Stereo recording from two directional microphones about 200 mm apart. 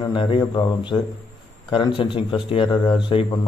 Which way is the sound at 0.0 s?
25° left (ahead or behind).